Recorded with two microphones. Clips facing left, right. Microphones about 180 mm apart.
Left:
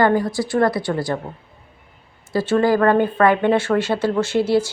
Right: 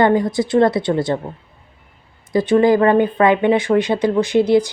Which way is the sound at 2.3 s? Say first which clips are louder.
Right 4 dB; 15° right (ahead or behind).